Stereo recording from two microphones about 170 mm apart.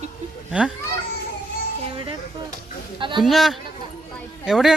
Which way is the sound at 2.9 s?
30° right (ahead or behind).